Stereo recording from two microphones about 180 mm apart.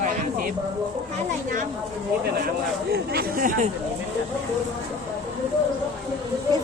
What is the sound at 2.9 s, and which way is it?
Speech, 60° right (ahead or behind).